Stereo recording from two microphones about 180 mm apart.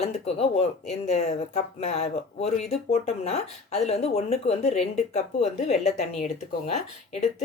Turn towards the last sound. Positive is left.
turn(degrees=35)  # may be behind; listen again after turning